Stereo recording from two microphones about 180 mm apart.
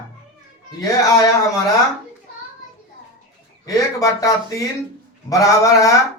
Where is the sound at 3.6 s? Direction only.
20° left (ahead or behind).